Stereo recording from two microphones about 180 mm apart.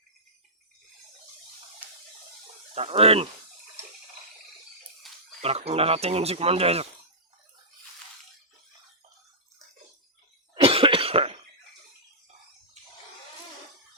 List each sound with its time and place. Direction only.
2.7 s speech: 35° right (ahead or behind)
5.0 s a sound: centre (ahead or behind)
5.4 s speech: 35° right (ahead or behind)
10.5 s cough: 30° right (ahead or behind)